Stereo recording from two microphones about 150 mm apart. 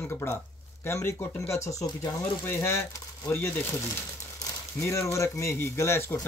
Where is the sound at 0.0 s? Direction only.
15° left (ahead or behind).